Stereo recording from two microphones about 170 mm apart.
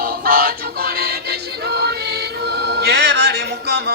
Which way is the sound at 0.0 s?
60° right (ahead or behind).